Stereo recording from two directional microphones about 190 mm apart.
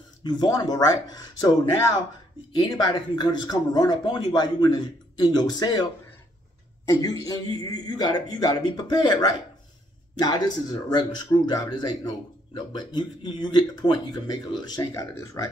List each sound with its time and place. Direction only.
0.2 s speech: 20° left (ahead or behind)
2.5 s speech: 20° left (ahead or behind)
6.9 s speech: 20° left (ahead or behind)